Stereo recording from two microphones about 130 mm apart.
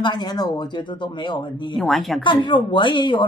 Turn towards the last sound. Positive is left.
turn(degrees=40)  # may be behind; listen again after turning